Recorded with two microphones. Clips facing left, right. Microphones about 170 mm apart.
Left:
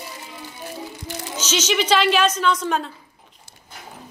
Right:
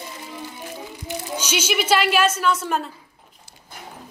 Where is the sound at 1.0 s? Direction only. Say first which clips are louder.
Right 4 dB; 10° right (ahead or behind).